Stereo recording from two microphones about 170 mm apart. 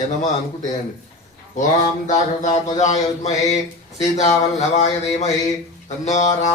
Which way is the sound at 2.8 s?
40° left (ahead or behind).